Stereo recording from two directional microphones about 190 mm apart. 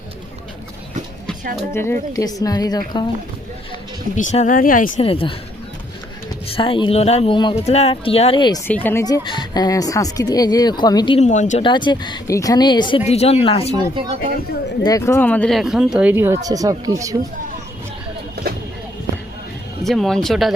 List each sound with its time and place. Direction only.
1.7 s speech: 15° left (ahead or behind)
4.1 s speech: 40° left (ahead or behind)
5.0 s speech: 30° left (ahead or behind)
6.5 s speech: 25° left (ahead or behind)
8.6 s speech: 10° left (ahead or behind); by 11.3 s 25° left (ahead or behind)
11.3 s speech: 40° left (ahead or behind)
11.6 s speech: 25° left (ahead or behind)
13.7 s speech: 25° right (ahead or behind)
14.8 s speech: 15° left (ahead or behind); by 17.2 s 15° right (ahead or behind)
19.8 s speech: centre (ahead or behind)